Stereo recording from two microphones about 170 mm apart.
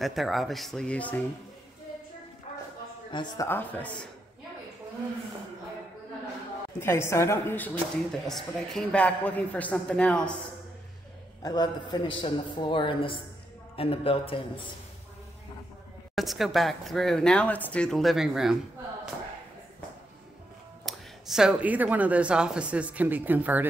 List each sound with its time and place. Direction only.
0.0 s speech: centre (ahead or behind)
3.1 s speech: 25° left (ahead or behind)
3.4 s a woman's voice: 10° left (ahead or behind)
6.8 s a woman's voice: 15° left (ahead or behind)
11.4 s a man's voice: 25° left (ahead or behind)
16.2 s speech: centre (ahead or behind)
20.8 s a woman's voice: 5° right (ahead or behind)